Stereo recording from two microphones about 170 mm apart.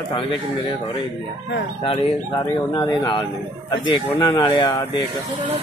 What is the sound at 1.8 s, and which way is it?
Speech, 30° left (ahead or behind).